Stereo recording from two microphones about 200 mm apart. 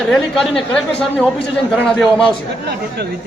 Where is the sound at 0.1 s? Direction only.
Centre (ahead or behind).